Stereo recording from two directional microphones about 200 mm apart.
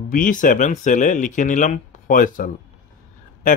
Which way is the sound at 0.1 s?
40° left (ahead or behind).